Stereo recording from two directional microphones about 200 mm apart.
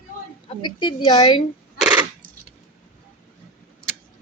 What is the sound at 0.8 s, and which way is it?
Speech, 20° left (ahead or behind).